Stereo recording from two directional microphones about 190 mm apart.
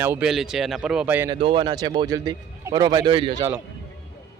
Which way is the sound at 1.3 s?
25° right (ahead or behind).